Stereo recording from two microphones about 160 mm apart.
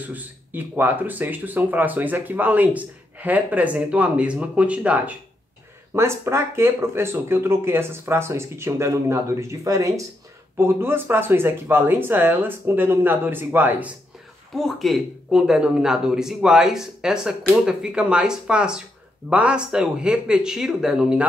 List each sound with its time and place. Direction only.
0.1 s speech: 10° right (ahead or behind)
14.5 s speech: centre (ahead or behind)